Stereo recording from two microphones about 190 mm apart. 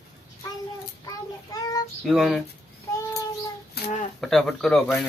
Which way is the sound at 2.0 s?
Centre (ahead or behind).